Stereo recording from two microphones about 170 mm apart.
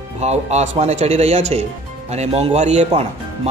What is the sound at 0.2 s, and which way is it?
Speech, 40° right (ahead or behind).